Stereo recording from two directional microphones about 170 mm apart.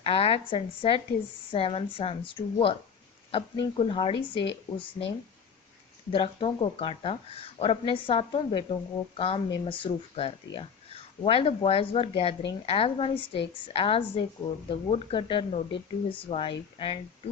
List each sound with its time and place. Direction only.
0.0 s speech: 35° left (ahead or behind)